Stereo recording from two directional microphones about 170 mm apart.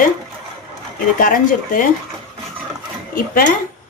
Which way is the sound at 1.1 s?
55° left (ahead or behind).